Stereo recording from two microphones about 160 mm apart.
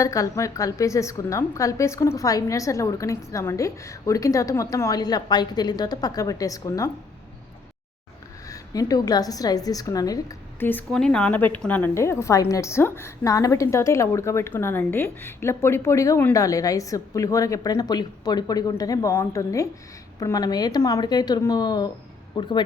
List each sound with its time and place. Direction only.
0.0 s a woman's voice: 20° left (ahead or behind)
8.4 s a woman's voice: 20° left (ahead or behind)